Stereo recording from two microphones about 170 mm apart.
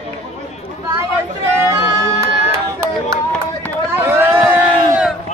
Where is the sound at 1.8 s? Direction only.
15° right (ahead or behind).